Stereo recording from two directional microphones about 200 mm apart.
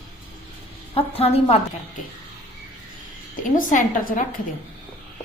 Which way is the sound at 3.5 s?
40° left (ahead or behind).